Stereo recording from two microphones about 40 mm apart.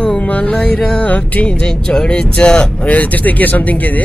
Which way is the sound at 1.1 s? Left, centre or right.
Left.